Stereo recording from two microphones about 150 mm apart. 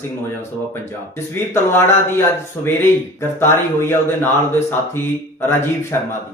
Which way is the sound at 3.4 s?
15° left (ahead or behind).